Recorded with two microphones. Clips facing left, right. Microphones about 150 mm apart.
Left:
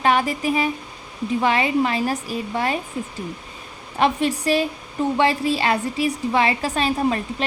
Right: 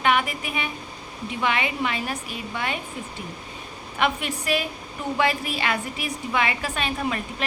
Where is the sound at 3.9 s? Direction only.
35° left (ahead or behind).